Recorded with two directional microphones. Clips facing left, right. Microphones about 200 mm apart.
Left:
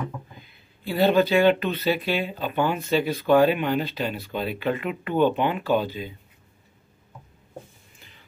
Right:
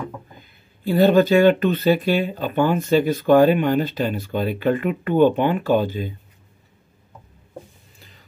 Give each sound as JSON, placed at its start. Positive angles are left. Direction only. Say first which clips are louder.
{"t": 0.4, "sound": "speech", "louder": "right 5 dB", "side_deg": -45}